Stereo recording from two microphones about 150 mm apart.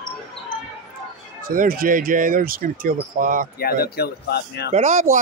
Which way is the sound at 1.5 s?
70° right (ahead or behind).